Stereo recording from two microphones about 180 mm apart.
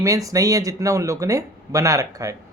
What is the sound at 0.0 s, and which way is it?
Speech, 20° right (ahead or behind).